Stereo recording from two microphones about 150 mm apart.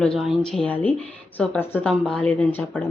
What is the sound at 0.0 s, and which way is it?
Speech, centre (ahead or behind).